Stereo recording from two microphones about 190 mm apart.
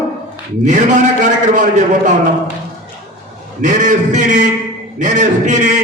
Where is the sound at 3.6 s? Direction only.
40° right (ahead or behind).